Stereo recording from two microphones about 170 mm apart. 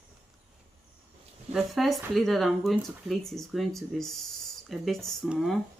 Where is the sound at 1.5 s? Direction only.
Centre (ahead or behind).